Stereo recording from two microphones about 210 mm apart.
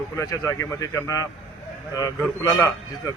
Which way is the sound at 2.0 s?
5° left (ahead or behind).